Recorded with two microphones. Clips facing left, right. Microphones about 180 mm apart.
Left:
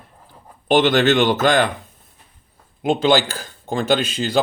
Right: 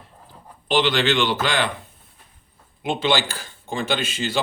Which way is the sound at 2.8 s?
45° left (ahead or behind).